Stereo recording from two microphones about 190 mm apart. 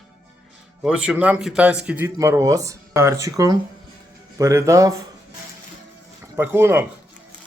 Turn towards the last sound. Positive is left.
turn(degrees=-10)  # may be behind; listen again after turning